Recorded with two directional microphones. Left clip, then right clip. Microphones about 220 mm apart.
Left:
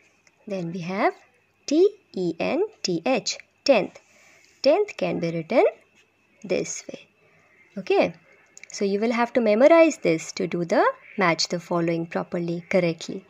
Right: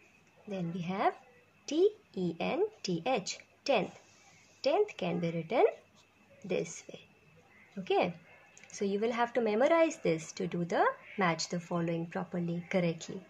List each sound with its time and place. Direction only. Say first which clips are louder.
0.5 s a woman's voice: left 9 dB; 40° left (ahead or behind)